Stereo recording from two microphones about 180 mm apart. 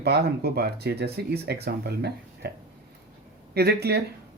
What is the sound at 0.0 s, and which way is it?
Speech, 65° right (ahead or behind).